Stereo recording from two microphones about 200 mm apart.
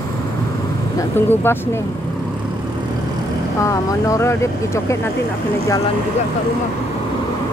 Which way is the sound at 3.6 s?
15° left (ahead or behind).